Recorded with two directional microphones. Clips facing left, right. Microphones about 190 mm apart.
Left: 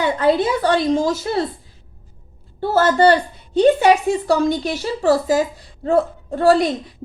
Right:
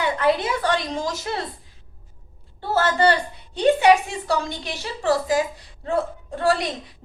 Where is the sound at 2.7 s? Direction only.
40° left (ahead or behind).